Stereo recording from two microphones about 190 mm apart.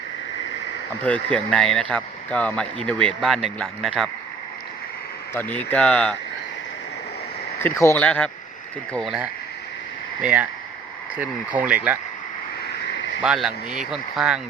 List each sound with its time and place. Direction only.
1.0 s speech: 5° left (ahead or behind)
5.3 s speech: 10° left (ahead or behind)
7.6 s speech: 15° left (ahead or behind); by 11.9 s 10° right (ahead or behind)
12.8 s a sound: 65° left (ahead or behind)
13.2 s speech: 5° right (ahead or behind)